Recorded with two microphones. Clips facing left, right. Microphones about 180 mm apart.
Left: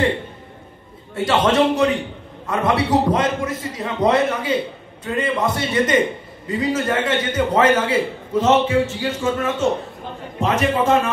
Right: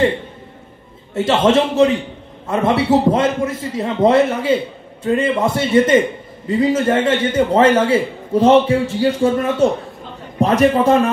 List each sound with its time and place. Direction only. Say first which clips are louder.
1.1 s a man's voice: right 3 dB; 25° right (ahead or behind)